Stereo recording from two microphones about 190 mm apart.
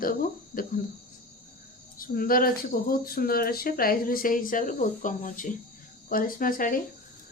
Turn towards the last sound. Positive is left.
turn(degrees=45)  # may be behind; listen again after turning